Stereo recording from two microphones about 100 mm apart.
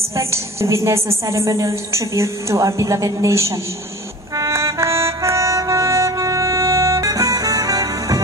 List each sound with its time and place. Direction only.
0.1 s a woman's voice: 30° right (ahead or behind)
4.4 s music: 30° right (ahead or behind)